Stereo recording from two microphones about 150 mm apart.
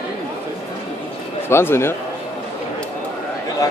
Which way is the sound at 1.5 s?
15° left (ahead or behind).